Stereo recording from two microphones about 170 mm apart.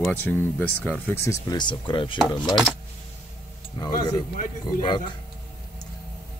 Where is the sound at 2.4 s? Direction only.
Centre (ahead or behind).